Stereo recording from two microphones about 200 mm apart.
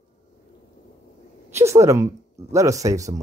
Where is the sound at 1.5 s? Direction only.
15° right (ahead or behind).